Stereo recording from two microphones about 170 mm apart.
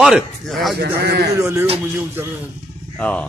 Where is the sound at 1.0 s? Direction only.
70° right (ahead or behind).